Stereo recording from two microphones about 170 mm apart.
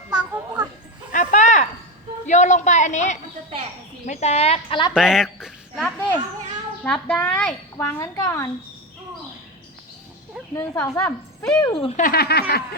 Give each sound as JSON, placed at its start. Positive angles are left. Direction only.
{"t": 0.1, "sound": "children playing", "side_deg": -5}
{"t": 1.1, "sound": "a sound", "side_deg": 45}
{"t": 2.2, "sound": "a woman's voice", "side_deg": 45}
{"t": 4.9, "sound": "a child's voice", "side_deg": -5}
{"t": 7.8, "sound": "a woman's voice", "side_deg": 15}
{"t": 10.5, "sound": "a woman's voice", "side_deg": 10}
{"t": 11.6, "sound": "speech", "side_deg": 25}
{"t": 11.9, "sound": "speech", "side_deg": 60}